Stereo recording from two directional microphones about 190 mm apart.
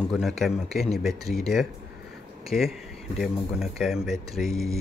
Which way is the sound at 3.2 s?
Centre (ahead or behind).